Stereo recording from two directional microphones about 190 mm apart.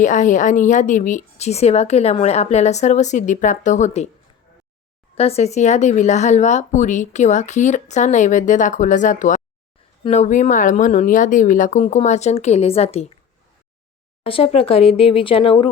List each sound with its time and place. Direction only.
0.0 s speech: 40° left (ahead or behind)
5.1 s speech: 30° left (ahead or behind)
14.3 s speech: 30° left (ahead or behind)